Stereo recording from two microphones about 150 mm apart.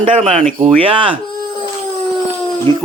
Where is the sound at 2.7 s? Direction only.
35° right (ahead or behind).